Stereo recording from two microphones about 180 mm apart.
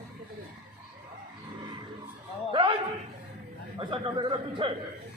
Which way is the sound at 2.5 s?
30° right (ahead or behind).